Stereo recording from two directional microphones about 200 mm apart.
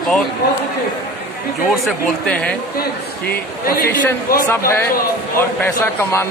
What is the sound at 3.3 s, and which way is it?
Speech, 50° left (ahead or behind).